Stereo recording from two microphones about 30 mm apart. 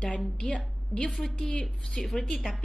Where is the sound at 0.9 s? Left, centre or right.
Left.